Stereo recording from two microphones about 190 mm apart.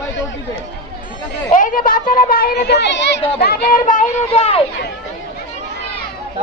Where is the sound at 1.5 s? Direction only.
45° left (ahead or behind).